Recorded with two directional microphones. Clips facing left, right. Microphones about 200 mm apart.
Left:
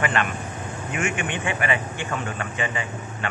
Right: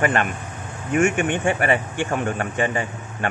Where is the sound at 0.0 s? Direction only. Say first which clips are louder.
Right 3 dB; 45° right (ahead or behind).